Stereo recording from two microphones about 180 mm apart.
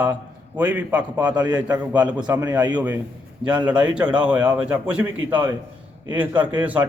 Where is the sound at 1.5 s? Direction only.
20° right (ahead or behind).